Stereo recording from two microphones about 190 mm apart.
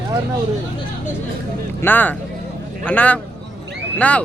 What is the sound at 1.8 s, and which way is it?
Speech, 10° left (ahead or behind).